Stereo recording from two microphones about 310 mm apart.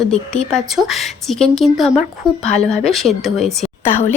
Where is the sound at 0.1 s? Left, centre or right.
Centre.